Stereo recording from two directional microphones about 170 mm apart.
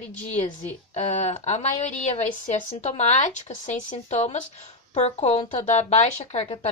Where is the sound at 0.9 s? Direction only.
45° left (ahead or behind).